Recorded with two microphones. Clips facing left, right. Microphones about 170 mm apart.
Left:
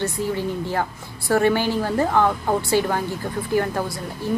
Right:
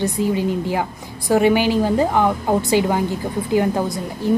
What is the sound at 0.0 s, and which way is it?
Speech, 15° right (ahead or behind).